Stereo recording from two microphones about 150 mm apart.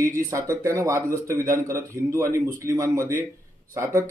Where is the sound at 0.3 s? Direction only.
20° right (ahead or behind).